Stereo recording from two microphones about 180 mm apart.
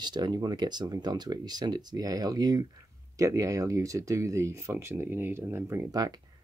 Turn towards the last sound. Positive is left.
turn(degrees=-20)  # may be behind; listen again after turning